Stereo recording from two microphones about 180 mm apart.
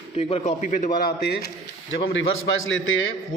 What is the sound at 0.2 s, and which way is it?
A man's voice, 35° left (ahead or behind).